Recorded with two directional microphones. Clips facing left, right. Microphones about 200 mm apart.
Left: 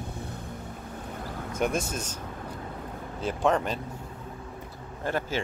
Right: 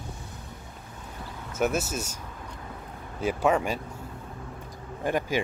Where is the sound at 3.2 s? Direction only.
10° right (ahead or behind).